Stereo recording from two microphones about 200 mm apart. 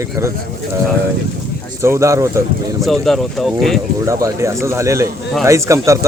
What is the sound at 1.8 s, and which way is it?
Speech, 15° right (ahead or behind).